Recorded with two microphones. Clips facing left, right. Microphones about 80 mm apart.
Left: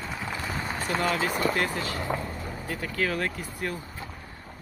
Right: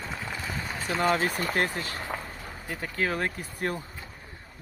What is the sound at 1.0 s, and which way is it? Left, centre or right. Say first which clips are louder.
Speech: right 1 dB; right.